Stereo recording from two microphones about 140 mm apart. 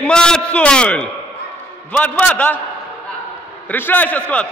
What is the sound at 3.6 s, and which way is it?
Speech, 15° left (ahead or behind).